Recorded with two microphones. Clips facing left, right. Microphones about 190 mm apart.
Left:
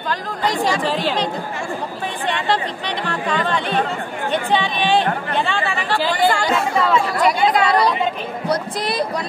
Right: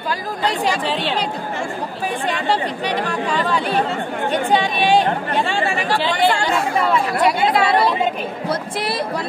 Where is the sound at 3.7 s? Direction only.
40° right (ahead or behind).